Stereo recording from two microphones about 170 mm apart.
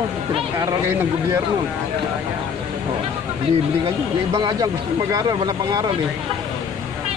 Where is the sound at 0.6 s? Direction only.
15° right (ahead or behind).